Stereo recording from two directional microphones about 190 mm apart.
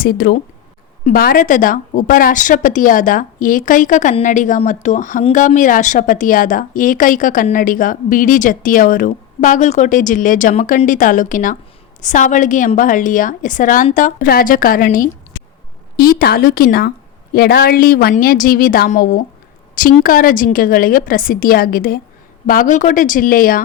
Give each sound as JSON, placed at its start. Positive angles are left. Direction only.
{"t": 0.0, "sound": "a woman's voice", "side_deg": 50}